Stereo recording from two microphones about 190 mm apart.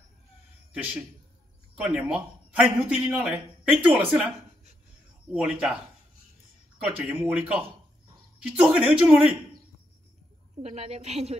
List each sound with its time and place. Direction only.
1.8 s a man's voice: 5° right (ahead or behind)
5.3 s speech: 5° right (ahead or behind)
6.8 s a man's voice: 10° right (ahead or behind)
8.6 s a man's voice: 5° right (ahead or behind)
10.6 s a woman's voice: 35° right (ahead or behind)